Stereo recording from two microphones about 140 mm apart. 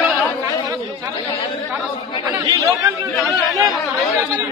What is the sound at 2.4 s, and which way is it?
Speech, 25° right (ahead or behind).